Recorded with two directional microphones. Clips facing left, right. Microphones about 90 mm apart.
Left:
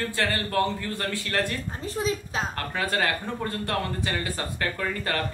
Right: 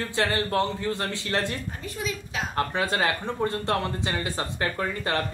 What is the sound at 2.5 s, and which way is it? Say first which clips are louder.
Speech: right 6 dB; 20° right (ahead or behind).